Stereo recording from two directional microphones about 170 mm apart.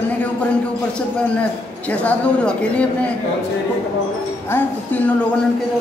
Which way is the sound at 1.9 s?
10° left (ahead or behind).